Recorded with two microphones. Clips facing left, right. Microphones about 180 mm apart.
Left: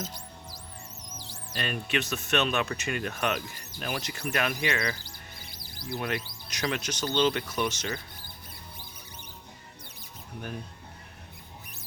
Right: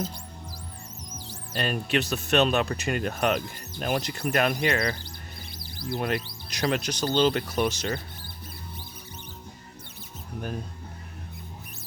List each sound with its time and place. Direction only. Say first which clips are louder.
1.5 s speech: right 4 dB; 35° right (ahead or behind)